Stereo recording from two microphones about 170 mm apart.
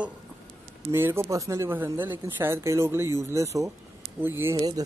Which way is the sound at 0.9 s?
15° right (ahead or behind).